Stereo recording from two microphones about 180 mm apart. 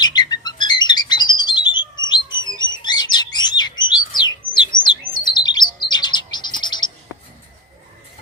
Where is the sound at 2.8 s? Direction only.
25° left (ahead or behind).